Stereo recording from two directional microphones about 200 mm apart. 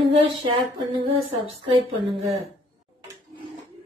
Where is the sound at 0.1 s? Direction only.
25° right (ahead or behind).